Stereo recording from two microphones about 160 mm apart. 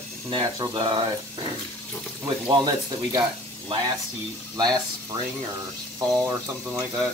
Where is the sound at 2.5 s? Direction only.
25° right (ahead or behind).